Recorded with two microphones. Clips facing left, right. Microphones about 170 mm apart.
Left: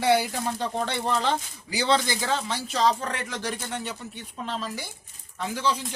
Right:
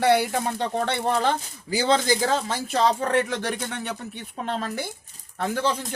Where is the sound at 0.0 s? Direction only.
60° right (ahead or behind).